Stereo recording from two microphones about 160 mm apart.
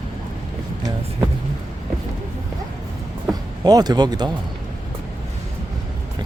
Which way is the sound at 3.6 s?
25° right (ahead or behind).